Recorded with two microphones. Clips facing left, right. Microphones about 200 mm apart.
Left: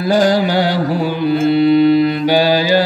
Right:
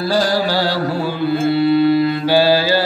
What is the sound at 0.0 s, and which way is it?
Music, 20° left (ahead or behind).